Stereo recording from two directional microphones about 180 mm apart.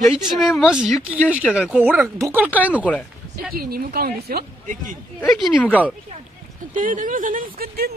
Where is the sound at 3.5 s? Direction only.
55° right (ahead or behind).